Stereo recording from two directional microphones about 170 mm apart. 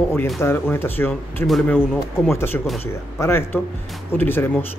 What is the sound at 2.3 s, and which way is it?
Speech, 15° left (ahead or behind).